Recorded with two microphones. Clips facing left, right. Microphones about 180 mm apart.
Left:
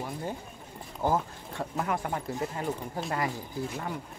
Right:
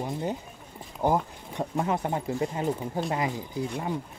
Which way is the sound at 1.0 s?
20° right (ahead or behind).